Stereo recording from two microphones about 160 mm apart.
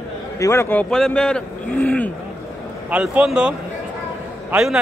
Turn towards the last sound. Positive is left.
turn(degrees=-5)  # may be behind; listen again after turning